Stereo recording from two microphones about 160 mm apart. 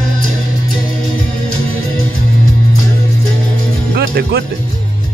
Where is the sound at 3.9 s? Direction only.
80° right.